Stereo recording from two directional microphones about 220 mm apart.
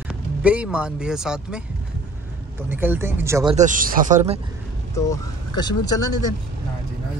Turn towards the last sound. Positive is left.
turn(degrees=15)  # may be behind; listen again after turning